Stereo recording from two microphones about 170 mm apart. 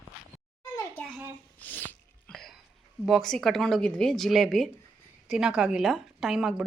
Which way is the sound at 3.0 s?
Centre (ahead or behind).